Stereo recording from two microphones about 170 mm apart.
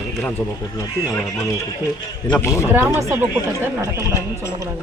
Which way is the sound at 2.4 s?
15° left (ahead or behind).